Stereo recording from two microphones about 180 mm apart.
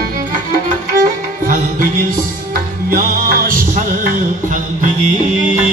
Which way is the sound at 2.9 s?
50° right (ahead or behind).